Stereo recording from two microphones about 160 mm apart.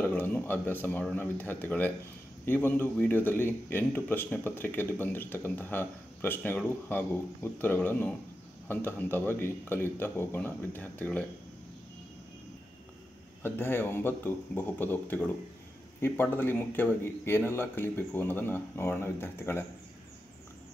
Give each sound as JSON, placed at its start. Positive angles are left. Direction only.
{"t": 0.0, "sound": "a man's voice", "side_deg": 10}
{"t": 13.4, "sound": "a man's voice", "side_deg": 15}